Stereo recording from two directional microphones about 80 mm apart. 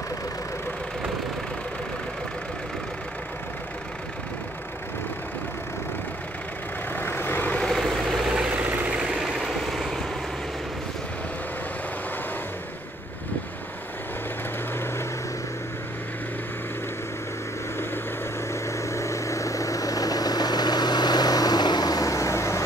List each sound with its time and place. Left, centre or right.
7.0 s vehicle: left
7.6 s vehicle: centre
8.5 s vehicle: centre
9.1 s vehicle: centre
18.5 s vehicle: left